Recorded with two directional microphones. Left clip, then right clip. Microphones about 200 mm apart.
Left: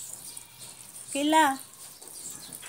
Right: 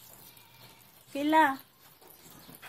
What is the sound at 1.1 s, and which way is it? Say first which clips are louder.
Speech: left 2 dB; 30° left (ahead or behind).